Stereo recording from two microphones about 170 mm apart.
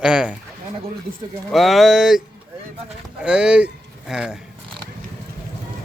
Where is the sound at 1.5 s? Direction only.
Centre (ahead or behind).